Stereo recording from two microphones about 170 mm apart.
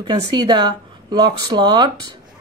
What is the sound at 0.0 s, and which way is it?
Speech, 25° right (ahead or behind).